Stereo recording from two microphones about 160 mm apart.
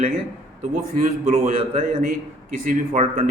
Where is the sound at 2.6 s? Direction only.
55° right (ahead or behind).